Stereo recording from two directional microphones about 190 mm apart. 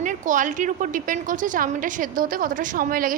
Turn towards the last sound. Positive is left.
turn(degrees=-50)  # may be behind; listen again after turning